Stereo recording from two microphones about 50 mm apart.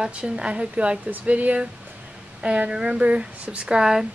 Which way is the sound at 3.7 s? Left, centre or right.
Centre.